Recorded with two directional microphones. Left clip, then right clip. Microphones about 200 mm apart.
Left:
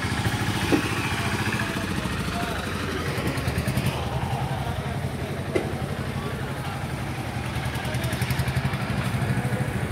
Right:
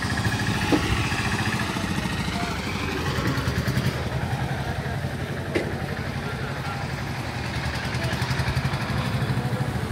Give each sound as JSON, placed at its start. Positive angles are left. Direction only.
{"t": 0.6, "sound": "vehicle", "side_deg": -15}